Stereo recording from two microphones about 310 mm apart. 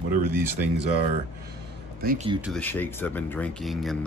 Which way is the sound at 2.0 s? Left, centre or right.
Right.